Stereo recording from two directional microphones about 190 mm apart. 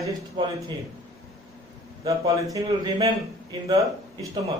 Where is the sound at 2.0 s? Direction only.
15° right (ahead or behind).